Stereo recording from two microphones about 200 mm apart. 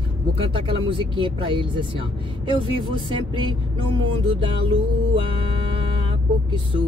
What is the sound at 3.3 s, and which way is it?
Speech, 25° right (ahead or behind).